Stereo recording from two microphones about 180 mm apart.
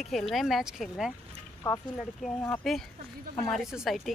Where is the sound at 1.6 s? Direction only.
15° left (ahead or behind).